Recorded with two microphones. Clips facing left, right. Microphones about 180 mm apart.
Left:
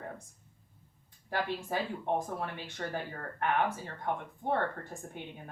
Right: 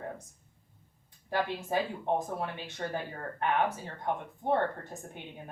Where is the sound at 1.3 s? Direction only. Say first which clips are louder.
Right 3 dB; 20° right (ahead or behind).